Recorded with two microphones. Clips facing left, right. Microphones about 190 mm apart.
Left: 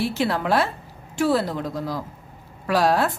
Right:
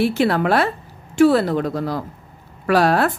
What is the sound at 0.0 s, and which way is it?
Speech, 65° right (ahead or behind).